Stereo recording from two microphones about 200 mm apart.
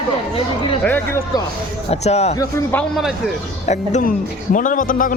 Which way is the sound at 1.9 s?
30° left (ahead or behind).